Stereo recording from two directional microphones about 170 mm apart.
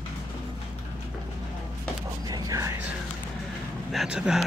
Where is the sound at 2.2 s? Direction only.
20° right (ahead or behind).